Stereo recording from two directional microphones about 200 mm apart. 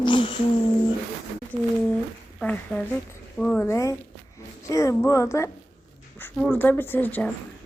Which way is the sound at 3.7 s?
15° left (ahead or behind).